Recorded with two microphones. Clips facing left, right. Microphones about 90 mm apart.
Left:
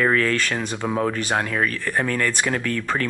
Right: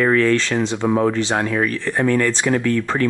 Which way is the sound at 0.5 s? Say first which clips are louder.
Right 6 dB; 20° right (ahead or behind).